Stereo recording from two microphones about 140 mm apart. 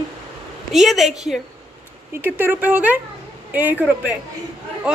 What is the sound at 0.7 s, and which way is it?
Speech, centre (ahead or behind).